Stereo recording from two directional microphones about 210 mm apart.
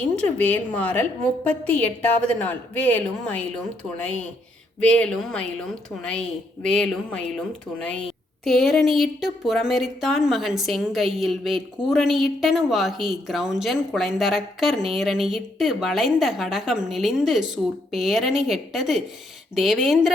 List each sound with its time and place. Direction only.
0.3 s a woman's voice: 10° left (ahead or behind)
4.8 s a woman's voice: 5° left (ahead or behind)